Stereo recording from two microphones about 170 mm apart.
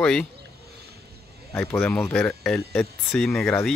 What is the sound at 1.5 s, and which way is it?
Speech, 10° left (ahead or behind).